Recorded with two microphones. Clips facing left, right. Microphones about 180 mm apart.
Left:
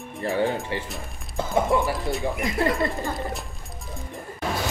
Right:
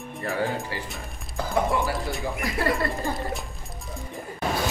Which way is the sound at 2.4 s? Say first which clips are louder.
Left 2 dB; 20° left (ahead or behind).